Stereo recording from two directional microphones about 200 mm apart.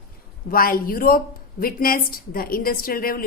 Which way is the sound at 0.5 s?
45° left (ahead or behind).